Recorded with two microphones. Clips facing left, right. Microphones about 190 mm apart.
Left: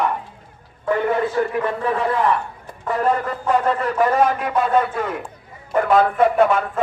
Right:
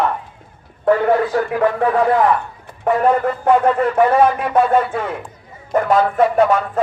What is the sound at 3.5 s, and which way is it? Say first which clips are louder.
Speech: right 5 dB; 65° right (ahead or behind).